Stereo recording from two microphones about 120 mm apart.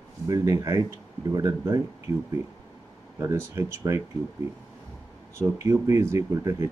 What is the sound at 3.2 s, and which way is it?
Speech, 25° right (ahead or behind).